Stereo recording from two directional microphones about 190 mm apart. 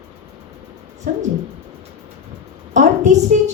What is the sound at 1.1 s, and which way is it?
Speech, 45° right (ahead or behind).